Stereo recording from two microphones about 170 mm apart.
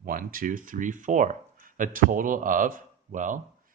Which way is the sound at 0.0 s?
55° right (ahead or behind).